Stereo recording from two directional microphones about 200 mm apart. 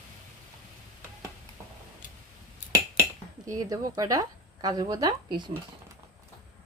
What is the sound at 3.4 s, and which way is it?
A woman's voice, 20° right (ahead or behind).